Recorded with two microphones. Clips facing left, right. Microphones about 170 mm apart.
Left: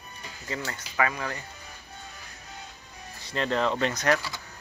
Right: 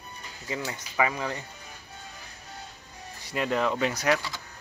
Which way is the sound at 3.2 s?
10° right (ahead or behind).